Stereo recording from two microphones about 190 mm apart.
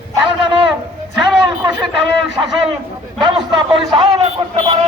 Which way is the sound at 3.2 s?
25° right (ahead or behind).